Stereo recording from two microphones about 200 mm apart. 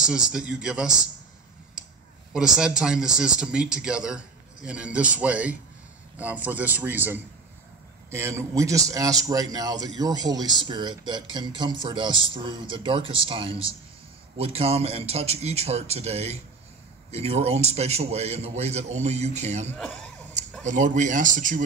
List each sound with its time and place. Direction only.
0.0 s speech: 5° right (ahead or behind)
2.3 s a man's voice: 5° right (ahead or behind); by 19.7 s 35° right (ahead or behind)
19.7 s speech: 5° left (ahead or behind)
20.6 s a man's voice: 40° right (ahead or behind)